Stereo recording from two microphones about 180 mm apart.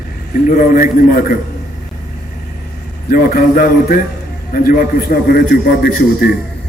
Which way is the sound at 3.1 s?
50° left (ahead or behind).